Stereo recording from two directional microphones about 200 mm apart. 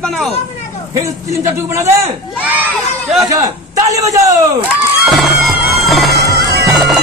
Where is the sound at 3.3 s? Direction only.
15° right (ahead or behind).